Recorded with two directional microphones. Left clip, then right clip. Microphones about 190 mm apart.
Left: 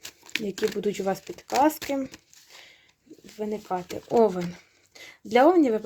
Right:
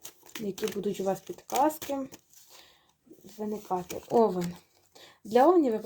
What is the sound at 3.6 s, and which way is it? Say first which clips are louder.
A woman's voice: left 2 dB; 30° left (ahead or behind).